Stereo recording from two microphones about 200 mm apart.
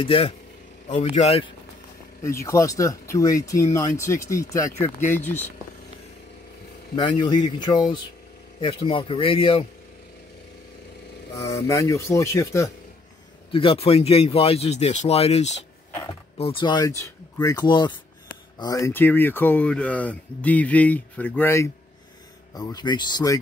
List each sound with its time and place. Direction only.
0.0 s speech: 25° left (ahead or behind)
2.2 s speech: 15° left (ahead or behind)
7.0 s speech: 20° left (ahead or behind)
11.3 s speech: 15° left (ahead or behind)
13.5 s speech: 30° left (ahead or behind)